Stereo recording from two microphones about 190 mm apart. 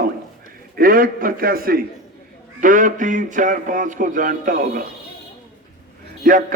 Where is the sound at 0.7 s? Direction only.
50° right (ahead or behind).